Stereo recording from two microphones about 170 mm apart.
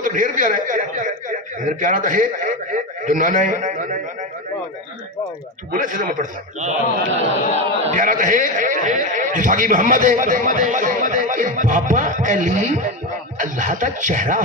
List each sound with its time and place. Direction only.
0.0 s a man's voice: 50° right (ahead or behind)
5.7 s a man's voice: 50° right (ahead or behind)